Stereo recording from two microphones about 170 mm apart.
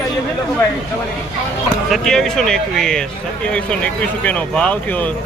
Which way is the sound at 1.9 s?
Centre (ahead or behind).